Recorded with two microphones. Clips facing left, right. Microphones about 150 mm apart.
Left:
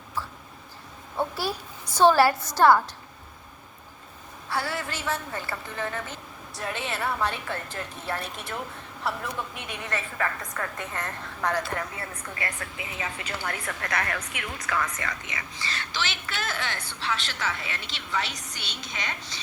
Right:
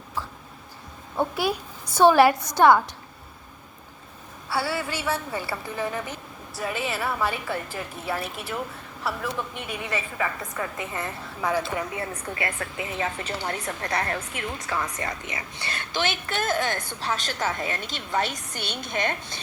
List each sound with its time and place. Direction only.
2.0 s a woman's voice: 15° right (ahead or behind)
4.4 s a woman's voice: 5° right (ahead or behind)
11.9 s a woman's voice: 20° right (ahead or behind)
12.5 s a woman's voice: 45° right (ahead or behind)
13.2 s a woman's voice: 25° right (ahead or behind)
15.5 s a woman's voice: 55° right (ahead or behind)